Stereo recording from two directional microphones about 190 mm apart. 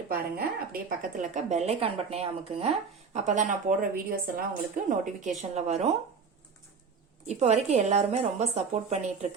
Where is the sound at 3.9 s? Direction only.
50° right (ahead or behind).